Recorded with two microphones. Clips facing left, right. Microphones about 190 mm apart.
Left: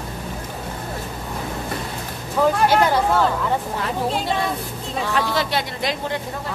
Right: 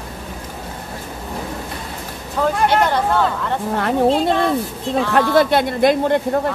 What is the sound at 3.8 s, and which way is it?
Speech, 55° right (ahead or behind).